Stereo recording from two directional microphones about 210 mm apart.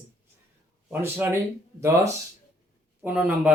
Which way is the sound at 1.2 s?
10° right (ahead or behind).